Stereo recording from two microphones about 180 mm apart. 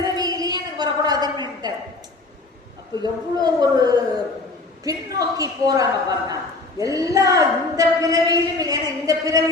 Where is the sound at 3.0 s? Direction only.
20° right (ahead or behind).